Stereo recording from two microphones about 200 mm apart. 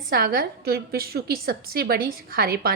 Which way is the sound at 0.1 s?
50° right (ahead or behind).